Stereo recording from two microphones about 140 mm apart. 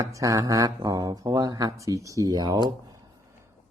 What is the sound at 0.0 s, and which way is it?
Speech, 25° right (ahead or behind).